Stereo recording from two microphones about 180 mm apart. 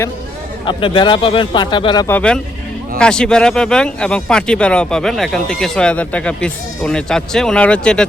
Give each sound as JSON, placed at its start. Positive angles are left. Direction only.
{"t": 0.6, "sound": "speech", "side_deg": 30}
{"t": 2.0, "sound": "speech", "side_deg": 10}